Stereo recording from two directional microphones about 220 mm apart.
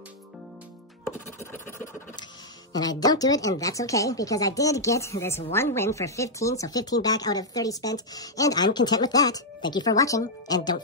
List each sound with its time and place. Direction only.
1.0 s scratch: 10° left (ahead or behind)
2.7 s speech: 15° left (ahead or behind)